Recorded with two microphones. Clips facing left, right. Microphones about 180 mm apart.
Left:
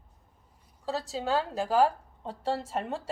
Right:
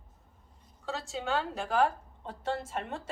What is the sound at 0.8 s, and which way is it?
A woman's voice, 35° left (ahead or behind).